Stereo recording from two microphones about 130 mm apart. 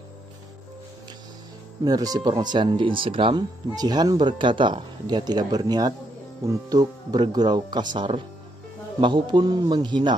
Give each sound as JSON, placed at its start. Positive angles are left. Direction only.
{"t": 1.9, "sound": "speech", "side_deg": -30}